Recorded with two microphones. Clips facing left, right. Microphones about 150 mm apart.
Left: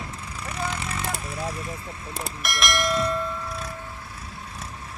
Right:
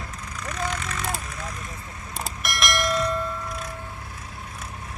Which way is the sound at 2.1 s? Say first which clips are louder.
Even; centre (ahead or behind).